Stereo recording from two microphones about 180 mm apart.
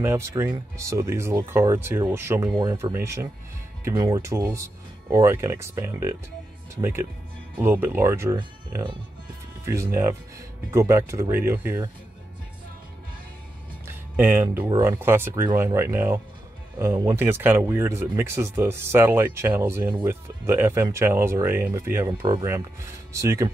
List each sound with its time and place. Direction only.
0.0 s speech: 15° right (ahead or behind)
10.7 s speech: 15° right (ahead or behind)
13.8 s music: 10° right (ahead or behind)
14.8 s speech: 15° right (ahead or behind)